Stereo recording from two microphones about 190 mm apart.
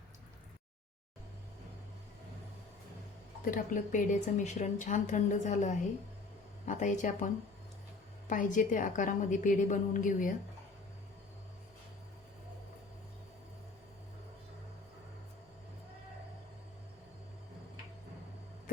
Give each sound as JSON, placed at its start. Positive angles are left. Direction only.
{"t": 3.4, "sound": "a woman's voice", "side_deg": 45}
{"t": 8.3, "sound": "a woman's voice", "side_deg": 45}